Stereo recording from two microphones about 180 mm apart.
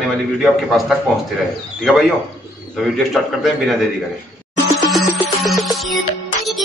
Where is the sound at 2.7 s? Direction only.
Centre (ahead or behind).